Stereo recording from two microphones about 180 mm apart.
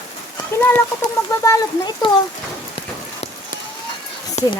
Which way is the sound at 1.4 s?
20° left (ahead or behind).